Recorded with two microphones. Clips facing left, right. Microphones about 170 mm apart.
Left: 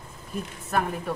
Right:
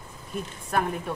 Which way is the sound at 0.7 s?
Centre (ahead or behind).